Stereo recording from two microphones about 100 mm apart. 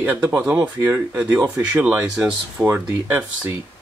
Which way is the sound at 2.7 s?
20° right (ahead or behind).